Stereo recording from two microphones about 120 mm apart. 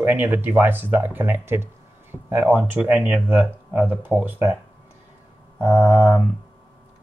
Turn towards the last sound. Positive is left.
turn(degrees=5)  # may be behind; listen again after turning